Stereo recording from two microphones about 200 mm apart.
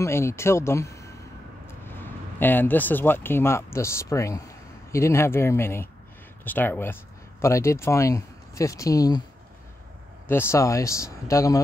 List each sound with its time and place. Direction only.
0.0 s speech: 15° left (ahead or behind)
10.2 s speech: 10° left (ahead or behind)